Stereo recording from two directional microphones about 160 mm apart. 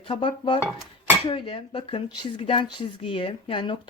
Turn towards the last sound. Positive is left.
turn(degrees=30)  # may be behind; listen again after turning